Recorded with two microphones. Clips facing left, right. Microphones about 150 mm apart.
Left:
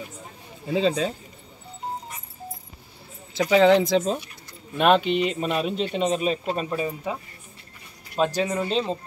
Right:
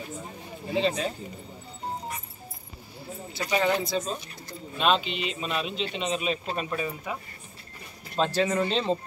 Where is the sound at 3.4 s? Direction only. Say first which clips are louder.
Left 9 dB; 90° left.